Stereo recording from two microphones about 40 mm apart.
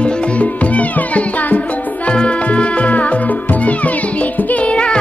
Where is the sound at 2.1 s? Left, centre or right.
Left.